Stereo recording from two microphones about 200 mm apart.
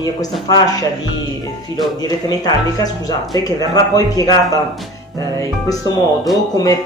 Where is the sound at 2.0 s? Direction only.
20° left (ahead or behind).